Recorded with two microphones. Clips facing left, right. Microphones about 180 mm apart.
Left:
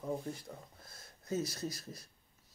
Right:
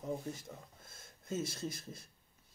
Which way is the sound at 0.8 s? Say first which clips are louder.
Left 1 dB; 25° right (ahead or behind).